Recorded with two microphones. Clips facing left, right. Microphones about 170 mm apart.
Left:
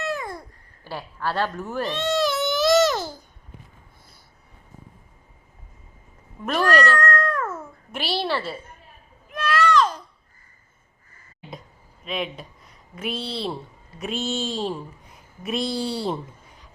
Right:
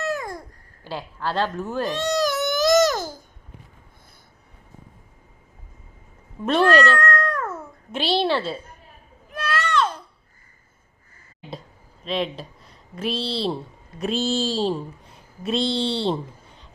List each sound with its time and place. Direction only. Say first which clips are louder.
0.0 s babbling: right 2 dB; 45° right (ahead or behind)
0.9 s a woman's voice: right 1 dB; 20° right (ahead or behind)
2.0 s babbling: left 1 dB; 45° right (ahead or behind)
6.4 s cat: right 3 dB; 30° right (ahead or behind)
9.3 s a sound: left 2 dB; 30° right (ahead or behind)
9.6 s a sound: left 4 dB; 35° left (ahead or behind)
12.0 s speech: right 3 dB; 30° right (ahead or behind)